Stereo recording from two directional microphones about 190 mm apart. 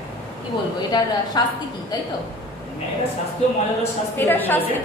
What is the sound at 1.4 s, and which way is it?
Speech, 20° left (ahead or behind).